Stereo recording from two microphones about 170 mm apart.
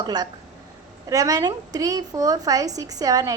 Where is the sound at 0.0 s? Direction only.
25° right (ahead or behind).